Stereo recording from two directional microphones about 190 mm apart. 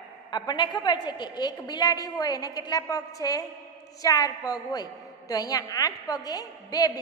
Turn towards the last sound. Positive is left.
turn(degrees=20)  # may be behind; listen again after turning